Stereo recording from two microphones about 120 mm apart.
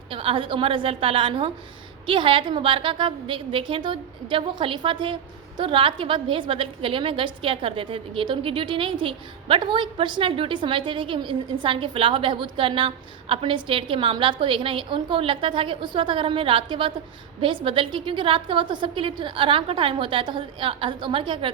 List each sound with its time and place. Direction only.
0.1 s a woman's voice: 50° right (ahead or behind)